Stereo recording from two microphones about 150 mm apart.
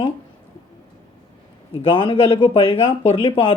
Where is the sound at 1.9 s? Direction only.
35° left (ahead or behind).